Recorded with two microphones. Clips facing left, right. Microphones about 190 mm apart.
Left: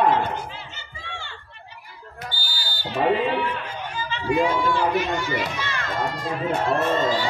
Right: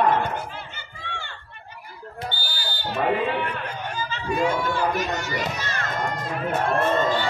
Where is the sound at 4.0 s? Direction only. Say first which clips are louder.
Left 3 dB; 45° right (ahead or behind).